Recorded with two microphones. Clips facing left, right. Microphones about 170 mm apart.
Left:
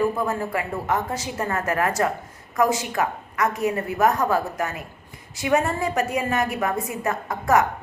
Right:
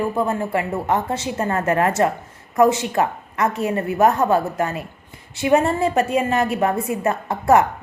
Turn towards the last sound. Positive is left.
turn(degrees=-30)  # may be behind; listen again after turning